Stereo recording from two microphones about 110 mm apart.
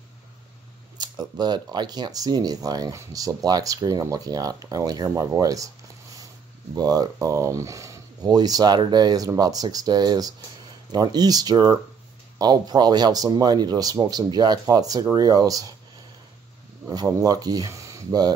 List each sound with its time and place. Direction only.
0.9 s speech: 40° right (ahead or behind)
6.7 s speech: 35° right (ahead or behind)
16.9 s speech: 35° right (ahead or behind)